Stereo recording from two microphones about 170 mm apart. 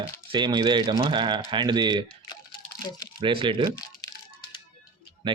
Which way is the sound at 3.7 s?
25° left (ahead or behind).